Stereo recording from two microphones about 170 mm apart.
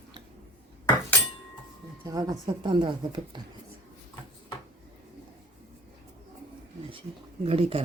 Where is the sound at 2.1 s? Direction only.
20° right (ahead or behind).